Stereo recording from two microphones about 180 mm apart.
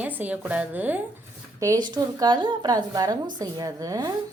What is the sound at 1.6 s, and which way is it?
A woman's voice, 20° right (ahead or behind).